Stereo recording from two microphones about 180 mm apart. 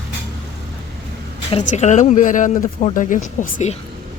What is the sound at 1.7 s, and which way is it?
Speech, 40° left (ahead or behind).